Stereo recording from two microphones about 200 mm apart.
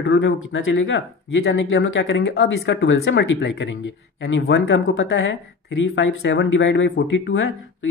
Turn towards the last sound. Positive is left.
turn(degrees=60)  # may be behind; listen again after turning